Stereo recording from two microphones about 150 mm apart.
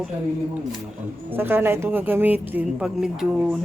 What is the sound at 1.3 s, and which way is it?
A woman's voice, 15° right (ahead or behind).